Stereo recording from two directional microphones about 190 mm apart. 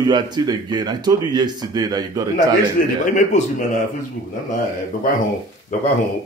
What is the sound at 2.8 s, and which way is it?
Speech, 45° left (ahead or behind).